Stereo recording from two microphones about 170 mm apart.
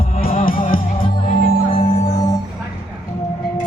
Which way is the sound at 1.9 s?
45° left (ahead or behind).